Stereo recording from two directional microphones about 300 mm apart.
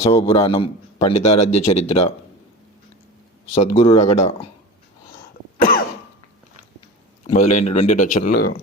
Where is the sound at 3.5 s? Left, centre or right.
Left.